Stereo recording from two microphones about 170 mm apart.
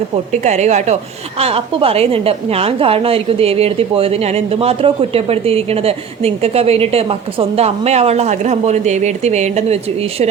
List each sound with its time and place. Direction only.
0.4 s a woman's voice: 40° right (ahead or behind)